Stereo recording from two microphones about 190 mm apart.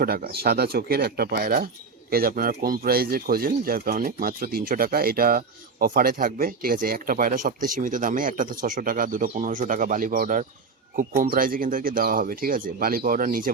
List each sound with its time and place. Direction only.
0.0 s speech: 50° right (ahead or behind)